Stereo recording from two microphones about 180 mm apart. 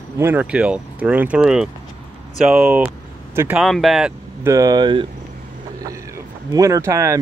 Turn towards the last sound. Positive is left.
turn(degrees=-15)  # may be behind; listen again after turning